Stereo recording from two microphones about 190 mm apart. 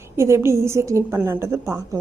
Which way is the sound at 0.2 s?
15° right (ahead or behind).